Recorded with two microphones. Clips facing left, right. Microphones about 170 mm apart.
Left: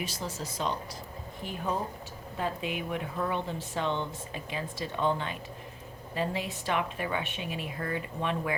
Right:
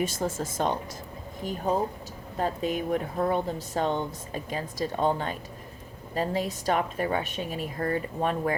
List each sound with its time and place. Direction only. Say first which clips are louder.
0.0 s a woman's voice: right 8 dB; 50° right (ahead or behind)